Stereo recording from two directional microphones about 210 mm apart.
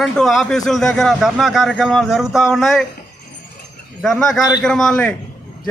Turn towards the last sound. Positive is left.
turn(degrees=5)  # may be behind; listen again after turning